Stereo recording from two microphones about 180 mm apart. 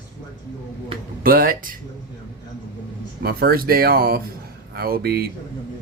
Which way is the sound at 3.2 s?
60° right (ahead or behind).